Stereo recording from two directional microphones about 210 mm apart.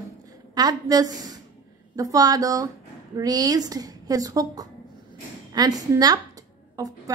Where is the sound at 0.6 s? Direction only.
20° right (ahead or behind).